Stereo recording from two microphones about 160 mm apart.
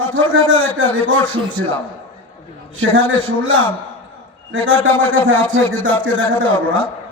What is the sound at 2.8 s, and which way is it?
Speech, 10° left (ahead or behind).